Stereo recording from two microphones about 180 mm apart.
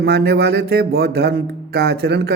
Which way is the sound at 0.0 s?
65° right (ahead or behind).